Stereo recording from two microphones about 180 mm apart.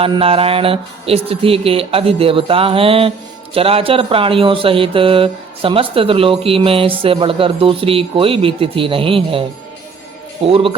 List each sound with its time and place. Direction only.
0.0 s speech: 30° right (ahead or behind)
10.4 s speech: 30° right (ahead or behind)